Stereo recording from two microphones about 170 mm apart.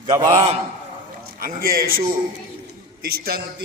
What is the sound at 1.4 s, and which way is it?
Speech, 60° right (ahead or behind).